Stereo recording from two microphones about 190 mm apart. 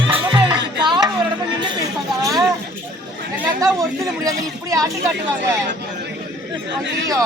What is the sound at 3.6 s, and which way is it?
Speech, 20° right (ahead or behind).